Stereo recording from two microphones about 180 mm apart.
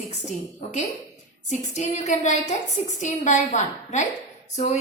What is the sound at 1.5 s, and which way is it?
Speech, 40° left (ahead or behind).